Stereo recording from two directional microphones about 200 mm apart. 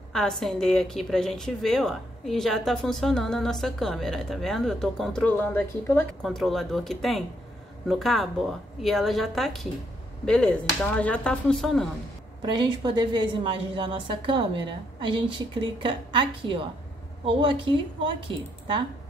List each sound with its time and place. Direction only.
0.1 s a woman's voice: 5° left (ahead or behind)
12.4 s a woman's voice: 25° right (ahead or behind)